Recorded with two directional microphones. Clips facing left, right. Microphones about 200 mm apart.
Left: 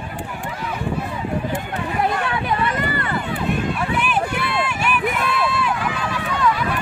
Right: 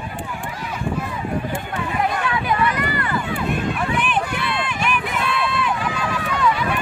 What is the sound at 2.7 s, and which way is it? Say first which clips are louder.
Run: even; 25° left (ahead or behind).